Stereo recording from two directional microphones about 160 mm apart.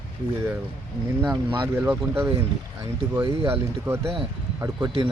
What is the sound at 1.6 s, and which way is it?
Speech, 15° right (ahead or behind).